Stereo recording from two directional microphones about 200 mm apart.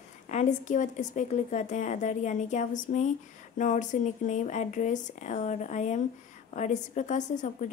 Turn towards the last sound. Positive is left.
turn(degrees=40)  # may be behind; listen again after turning